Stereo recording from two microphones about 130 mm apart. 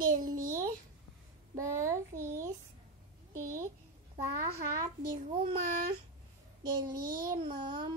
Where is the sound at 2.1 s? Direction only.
20° right (ahead or behind).